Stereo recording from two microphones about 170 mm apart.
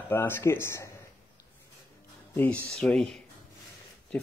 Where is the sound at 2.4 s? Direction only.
10° left (ahead or behind).